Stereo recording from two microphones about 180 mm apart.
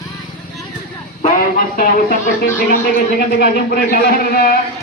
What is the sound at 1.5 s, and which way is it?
A man's voice, 55° left (ahead or behind).